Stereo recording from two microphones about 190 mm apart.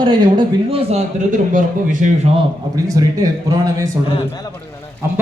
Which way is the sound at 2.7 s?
20° right (ahead or behind).